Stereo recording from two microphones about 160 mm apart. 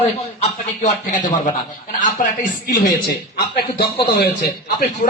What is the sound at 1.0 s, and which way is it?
A man's voice, 55° left (ahead or behind).